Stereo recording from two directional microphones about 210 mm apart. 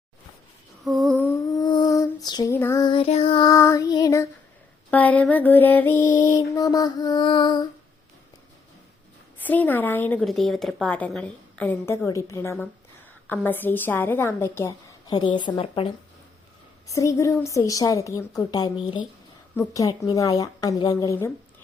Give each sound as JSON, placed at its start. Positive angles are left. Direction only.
{"t": 0.9, "sound": "humming", "side_deg": 5}
{"t": 1.5, "sound": "female singing", "side_deg": 20}
{"t": 4.9, "sound": "a woman's voice", "side_deg": 10}
{"t": 9.4, "sound": "a woman's voice", "side_deg": 10}